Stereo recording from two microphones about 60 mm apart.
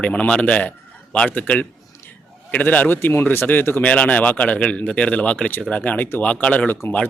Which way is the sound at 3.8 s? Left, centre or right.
Left.